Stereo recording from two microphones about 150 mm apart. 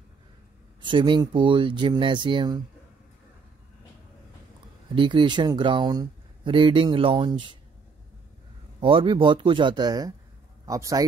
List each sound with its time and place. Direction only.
0.8 s speech: 35° right (ahead or behind)
4.9 s speech: 35° right (ahead or behind)
8.8 s a man's voice: 35° right (ahead or behind)